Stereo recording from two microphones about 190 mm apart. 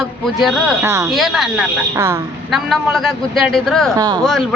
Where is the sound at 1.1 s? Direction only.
Centre (ahead or behind).